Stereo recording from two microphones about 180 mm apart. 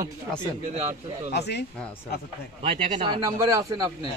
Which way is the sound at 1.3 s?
70° left (ahead or behind).